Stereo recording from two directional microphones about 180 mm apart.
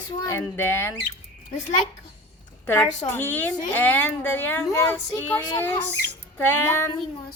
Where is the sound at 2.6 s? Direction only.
10° left (ahead or behind).